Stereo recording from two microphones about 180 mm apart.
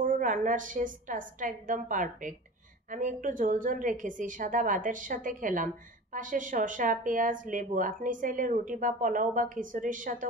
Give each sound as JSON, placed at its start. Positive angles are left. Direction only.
{"t": 0.0, "sound": "speech", "side_deg": -50}